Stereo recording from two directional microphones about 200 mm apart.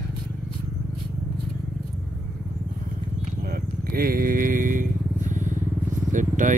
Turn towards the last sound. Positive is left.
turn(degrees=-40)  # may be behind; listen again after turning